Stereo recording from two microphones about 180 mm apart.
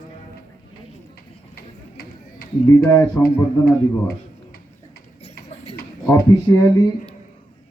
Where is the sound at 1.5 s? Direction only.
55° left (ahead or behind).